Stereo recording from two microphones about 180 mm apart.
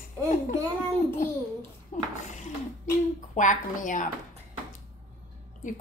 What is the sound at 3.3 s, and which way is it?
Speech, 45° left (ahead or behind).